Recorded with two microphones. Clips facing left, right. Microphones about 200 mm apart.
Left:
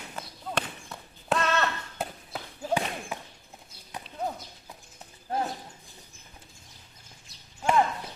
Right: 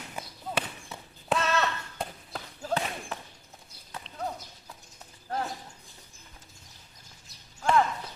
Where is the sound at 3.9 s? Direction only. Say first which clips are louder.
Left 2 dB; 15° left (ahead or behind).